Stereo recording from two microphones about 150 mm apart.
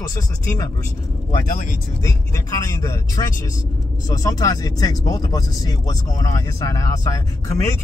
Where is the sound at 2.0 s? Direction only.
20° left (ahead or behind).